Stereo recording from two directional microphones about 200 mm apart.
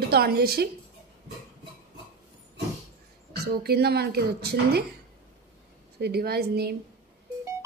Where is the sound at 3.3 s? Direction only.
50° right (ahead or behind).